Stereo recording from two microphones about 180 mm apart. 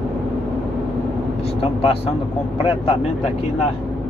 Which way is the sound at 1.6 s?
30° left (ahead or behind).